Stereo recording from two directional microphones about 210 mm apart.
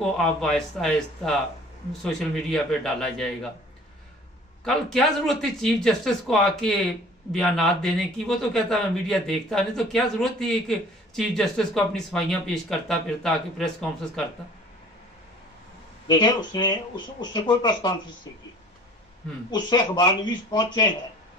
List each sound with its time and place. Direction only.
0.0 s a man's voice: centre (ahead or behind)
4.6 s a man's voice: centre (ahead or behind)
16.1 s speech: 20° left (ahead or behind)
19.5 s speech: 20° left (ahead or behind)